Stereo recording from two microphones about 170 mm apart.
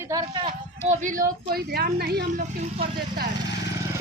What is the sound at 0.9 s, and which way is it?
Speech, 50° right (ahead or behind).